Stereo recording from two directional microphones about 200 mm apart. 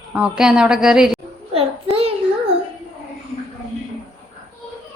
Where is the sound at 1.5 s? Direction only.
30° right (ahead or behind).